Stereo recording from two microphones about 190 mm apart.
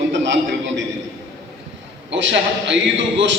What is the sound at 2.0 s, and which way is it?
Speech, 70° right (ahead or behind).